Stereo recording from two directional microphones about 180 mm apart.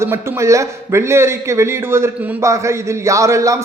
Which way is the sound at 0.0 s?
15° right (ahead or behind).